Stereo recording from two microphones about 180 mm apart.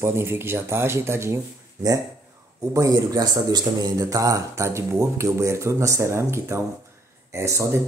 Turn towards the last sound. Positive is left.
turn(degrees=-15)  # may be behind; listen again after turning